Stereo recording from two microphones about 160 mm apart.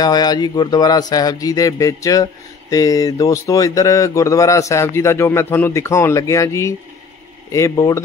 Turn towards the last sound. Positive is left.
turn(degrees=20)  # may be behind; listen again after turning